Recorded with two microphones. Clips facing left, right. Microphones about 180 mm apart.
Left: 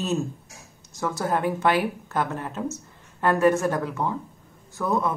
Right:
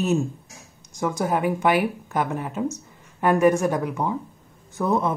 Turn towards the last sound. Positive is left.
turn(degrees=-20)  # may be behind; listen again after turning